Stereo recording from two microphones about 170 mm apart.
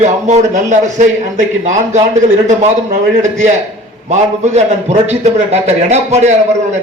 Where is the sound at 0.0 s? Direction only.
45° right (ahead or behind).